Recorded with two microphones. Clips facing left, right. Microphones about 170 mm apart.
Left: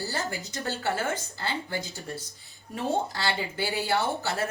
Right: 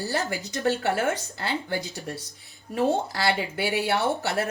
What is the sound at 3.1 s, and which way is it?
Speech, 70° right (ahead or behind).